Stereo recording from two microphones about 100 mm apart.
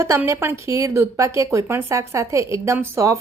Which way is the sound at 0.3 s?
25° right (ahead or behind).